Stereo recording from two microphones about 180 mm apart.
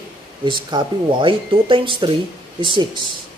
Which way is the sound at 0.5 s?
25° right (ahead or behind).